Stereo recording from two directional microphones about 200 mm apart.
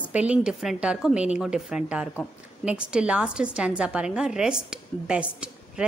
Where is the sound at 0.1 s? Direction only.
5° right (ahead or behind).